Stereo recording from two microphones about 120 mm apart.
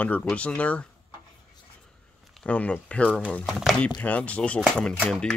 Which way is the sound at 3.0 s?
10° right (ahead or behind).